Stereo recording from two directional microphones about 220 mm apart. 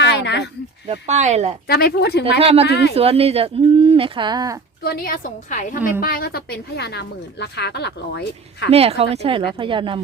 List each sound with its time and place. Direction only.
0.0 s a sound: 55° left (ahead or behind)
0.9 s speech: 30° right (ahead or behind)
1.6 s a woman's voice: 45° left (ahead or behind)
2.4 s speech: 25° right (ahead or behind)
4.8 s a woman's voice: 40° left (ahead or behind)
8.7 s speech: 25° right (ahead or behind)